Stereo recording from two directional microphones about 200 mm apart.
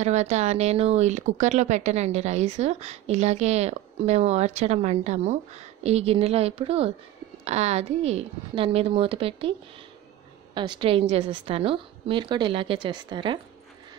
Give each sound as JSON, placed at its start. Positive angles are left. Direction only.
{"t": 0.0, "sound": "a woman's voice", "side_deg": -35}